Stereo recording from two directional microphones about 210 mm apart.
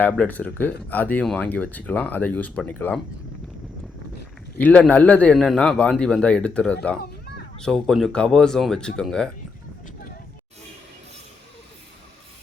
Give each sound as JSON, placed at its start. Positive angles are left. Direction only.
{"t": 0.0, "sound": "speech", "side_deg": 5}
{"t": 4.5, "sound": "a man's voice", "side_deg": 5}
{"t": 7.0, "sound": "a sound", "side_deg": 50}
{"t": 7.6, "sound": "a man's voice", "side_deg": 0}